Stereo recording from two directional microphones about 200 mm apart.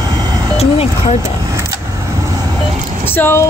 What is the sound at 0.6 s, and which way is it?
Vehicle, 30° left (ahead or behind).